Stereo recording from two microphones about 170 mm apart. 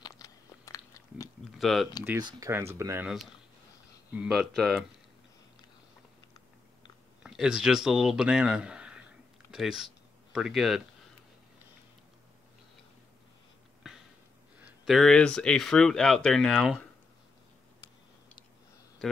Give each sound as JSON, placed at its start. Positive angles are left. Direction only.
{"t": 0.0, "sound": "biting", "side_deg": 20}
{"t": 1.6, "sound": "speech", "side_deg": 0}
{"t": 2.0, "sound": "speech", "side_deg": -20}
{"t": 4.1, "sound": "speech", "side_deg": -5}
{"t": 7.2, "sound": "speech", "side_deg": -5}
{"t": 14.6, "sound": "speech", "side_deg": 0}